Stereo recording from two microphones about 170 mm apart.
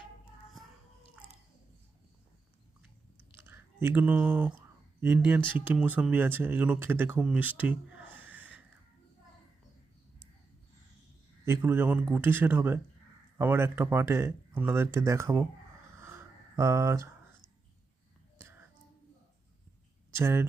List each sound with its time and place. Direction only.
3.3 s speech: 15° right (ahead or behind)
11.4 s speech: 15° right (ahead or behind)
16.0 s a sound: 15° right (ahead or behind)
18.3 s whispering: 15° right (ahead or behind)
20.1 s speech: 15° right (ahead or behind)